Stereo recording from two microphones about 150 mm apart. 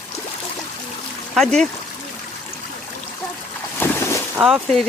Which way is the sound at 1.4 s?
5° left (ahead or behind).